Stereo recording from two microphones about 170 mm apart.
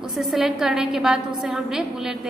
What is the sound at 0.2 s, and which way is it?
A woman's voice, centre (ahead or behind).